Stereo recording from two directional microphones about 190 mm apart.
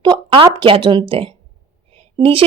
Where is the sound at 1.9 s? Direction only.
30° right (ahead or behind).